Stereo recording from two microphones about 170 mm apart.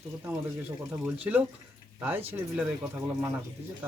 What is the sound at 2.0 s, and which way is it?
Speech, 10° right (ahead or behind).